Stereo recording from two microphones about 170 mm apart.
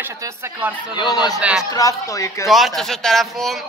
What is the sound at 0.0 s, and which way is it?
Speech, 10° right (ahead or behind).